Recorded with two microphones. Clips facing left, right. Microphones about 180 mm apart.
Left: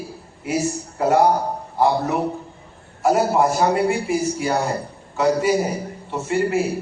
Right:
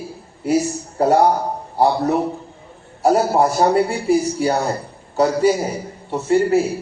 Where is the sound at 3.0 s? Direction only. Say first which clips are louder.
Right 2 dB; 35° right (ahead or behind).